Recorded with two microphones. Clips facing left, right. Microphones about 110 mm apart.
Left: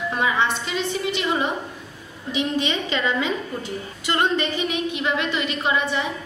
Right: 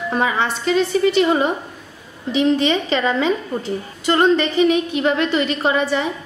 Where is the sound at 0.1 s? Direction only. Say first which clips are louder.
Right 3 dB; 40° right (ahead or behind).